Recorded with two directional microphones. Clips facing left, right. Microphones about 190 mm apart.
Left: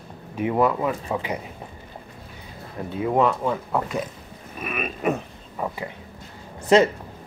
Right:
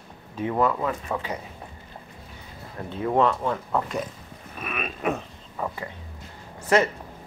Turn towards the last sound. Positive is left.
turn(degrees=20)  # may be behind; listen again after turning